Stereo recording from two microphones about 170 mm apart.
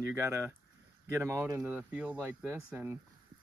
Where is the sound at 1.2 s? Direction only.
15° right (ahead or behind).